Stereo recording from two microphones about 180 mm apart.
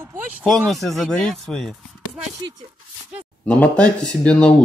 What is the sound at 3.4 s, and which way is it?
A man's voice, 5° left (ahead or behind).